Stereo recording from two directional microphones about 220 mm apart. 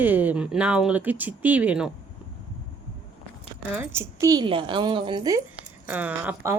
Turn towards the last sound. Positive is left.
turn(degrees=-10)  # may be behind; listen again after turning